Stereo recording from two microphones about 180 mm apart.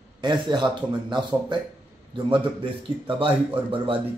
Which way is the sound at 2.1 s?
30° right (ahead or behind).